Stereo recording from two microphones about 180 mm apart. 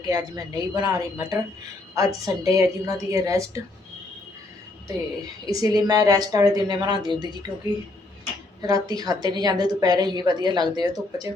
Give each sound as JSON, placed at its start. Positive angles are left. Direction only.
{"t": 0.0, "sound": "a woman's voice", "side_deg": -20}
{"t": 5.5, "sound": "a woman's voice", "side_deg": -20}
{"t": 8.6, "sound": "a woman's voice", "side_deg": -20}